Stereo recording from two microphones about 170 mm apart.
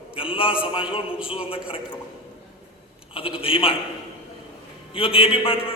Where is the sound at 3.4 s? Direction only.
35° left (ahead or behind).